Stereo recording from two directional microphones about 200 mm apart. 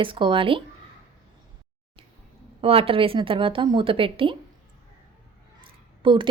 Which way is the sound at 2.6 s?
30° right (ahead or behind).